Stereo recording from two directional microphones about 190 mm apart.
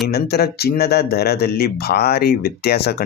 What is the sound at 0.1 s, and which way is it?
Speech, 55° left (ahead or behind).